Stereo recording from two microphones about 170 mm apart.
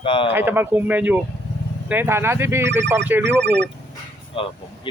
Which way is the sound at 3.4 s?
90° right.